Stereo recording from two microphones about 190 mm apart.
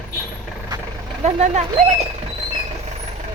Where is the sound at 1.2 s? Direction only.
35° right (ahead or behind).